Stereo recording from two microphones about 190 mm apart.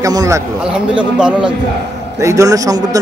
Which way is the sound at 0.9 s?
5° right (ahead or behind).